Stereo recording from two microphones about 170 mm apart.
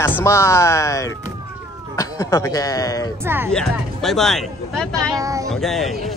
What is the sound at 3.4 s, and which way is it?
Speech, 5° left (ahead or behind).